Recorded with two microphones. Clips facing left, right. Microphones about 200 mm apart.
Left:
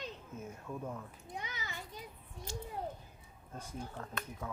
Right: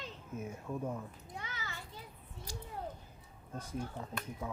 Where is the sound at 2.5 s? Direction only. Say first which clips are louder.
Left 4 dB; 25° left (ahead or behind).